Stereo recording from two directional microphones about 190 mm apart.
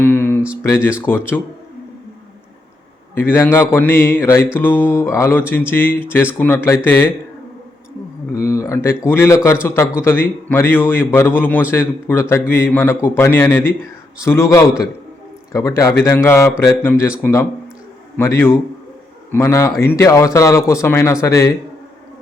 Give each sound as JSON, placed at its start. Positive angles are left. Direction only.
{"t": 0.0, "sound": "a sound", "side_deg": 10}
{"t": 0.6, "sound": "a man's voice", "side_deg": 15}
{"t": 3.2, "sound": "a man's voice", "side_deg": 10}
{"t": 8.3, "sound": "a man's voice", "side_deg": 15}
{"t": 18.2, "sound": "a man's voice", "side_deg": 10}